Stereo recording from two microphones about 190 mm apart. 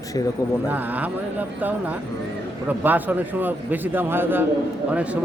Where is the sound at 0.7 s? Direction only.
10° right (ahead or behind).